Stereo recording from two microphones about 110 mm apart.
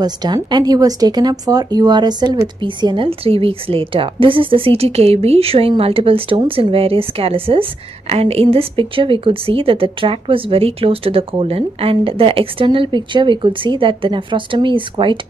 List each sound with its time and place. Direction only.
0.0 s a woman's voice: 40° right (ahead or behind)
3.1 s a woman's voice: 60° right (ahead or behind)
8.1 s a woman's voice: 65° right (ahead or behind); by 15.1 s 50° right (ahead or behind)